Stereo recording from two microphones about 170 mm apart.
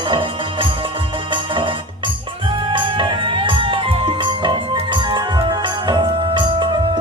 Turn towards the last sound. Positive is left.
turn(degrees=-25)  # may be behind; listen again after turning